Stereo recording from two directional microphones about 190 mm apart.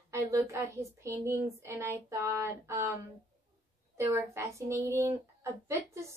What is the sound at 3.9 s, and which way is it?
Speech, 15° right (ahead or behind).